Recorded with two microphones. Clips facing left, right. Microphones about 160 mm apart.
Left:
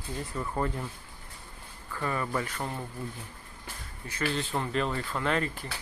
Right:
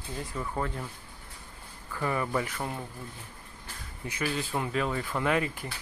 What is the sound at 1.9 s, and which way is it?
Speech, 15° right (ahead or behind).